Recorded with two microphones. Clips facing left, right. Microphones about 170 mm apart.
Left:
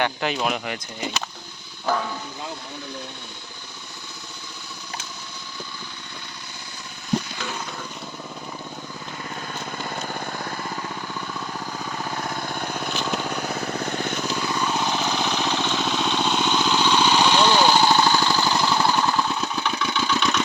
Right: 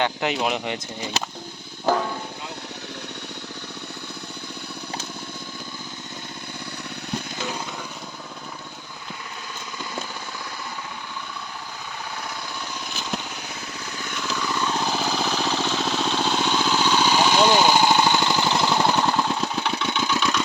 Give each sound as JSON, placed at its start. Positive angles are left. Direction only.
{"t": 0.0, "sound": "speech", "side_deg": -20}
{"t": 9.7, "sound": "a sound", "side_deg": 50}
{"t": 11.9, "sound": "lawn mower", "side_deg": 50}
{"t": 14.3, "sound": "vehicle", "side_deg": 20}
{"t": 14.7, "sound": "vehicle", "side_deg": 0}
{"t": 19.5, "sound": "engine", "side_deg": -25}